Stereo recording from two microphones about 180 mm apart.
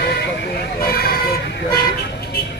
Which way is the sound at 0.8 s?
55° left (ahead or behind).